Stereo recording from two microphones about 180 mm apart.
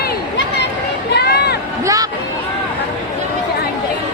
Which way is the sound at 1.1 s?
65° left (ahead or behind).